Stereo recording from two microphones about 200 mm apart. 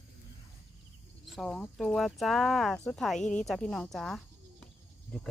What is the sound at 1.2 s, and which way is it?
Speech, centre (ahead or behind).